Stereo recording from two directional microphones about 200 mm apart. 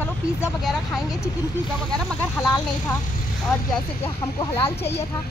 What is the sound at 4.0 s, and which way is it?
Speech, 15° left (ahead or behind).